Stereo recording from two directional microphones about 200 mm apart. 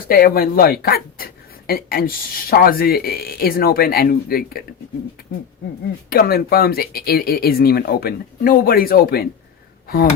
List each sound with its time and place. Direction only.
0.1 s speech: 50° left (ahead or behind)
6.1 s speech: 50° left (ahead or behind)